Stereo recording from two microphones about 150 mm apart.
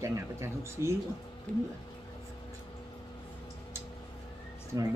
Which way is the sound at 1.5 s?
10° left (ahead or behind).